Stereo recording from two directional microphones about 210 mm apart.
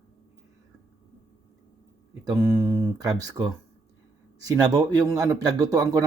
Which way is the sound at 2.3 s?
15° right (ahead or behind).